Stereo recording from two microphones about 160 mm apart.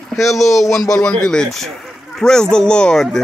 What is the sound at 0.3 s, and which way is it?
Speech, centre (ahead or behind).